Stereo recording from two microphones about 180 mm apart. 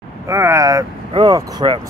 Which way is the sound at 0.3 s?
15° right (ahead or behind).